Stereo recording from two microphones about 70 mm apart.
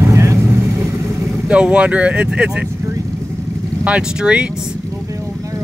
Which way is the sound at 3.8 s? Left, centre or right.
Centre.